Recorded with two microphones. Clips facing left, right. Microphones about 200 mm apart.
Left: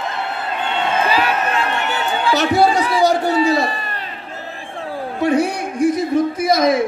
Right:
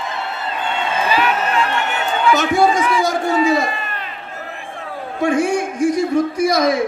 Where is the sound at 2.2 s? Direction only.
35° left (ahead or behind).